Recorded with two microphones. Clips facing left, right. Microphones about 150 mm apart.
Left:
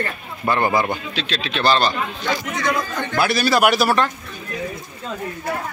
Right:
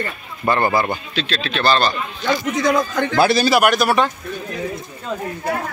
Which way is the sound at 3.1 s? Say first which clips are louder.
Right 4 dB; 30° right (ahead or behind).